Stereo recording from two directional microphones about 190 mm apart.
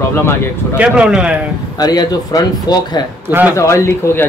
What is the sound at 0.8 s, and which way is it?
Speech, 5° right (ahead or behind).